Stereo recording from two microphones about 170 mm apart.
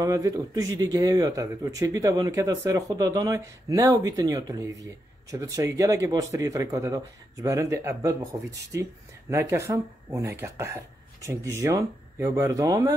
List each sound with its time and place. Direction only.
0.0 s speech: 20° right (ahead or behind)